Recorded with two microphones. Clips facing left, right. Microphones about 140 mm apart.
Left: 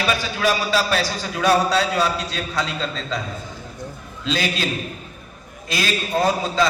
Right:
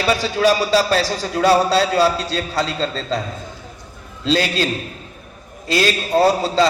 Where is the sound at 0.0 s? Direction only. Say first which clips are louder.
Right 5 dB; 35° right (ahead or behind).